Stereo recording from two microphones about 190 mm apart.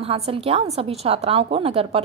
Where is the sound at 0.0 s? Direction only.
30° right (ahead or behind).